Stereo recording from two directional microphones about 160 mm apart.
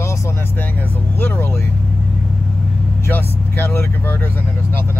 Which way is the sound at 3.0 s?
15° left (ahead or behind).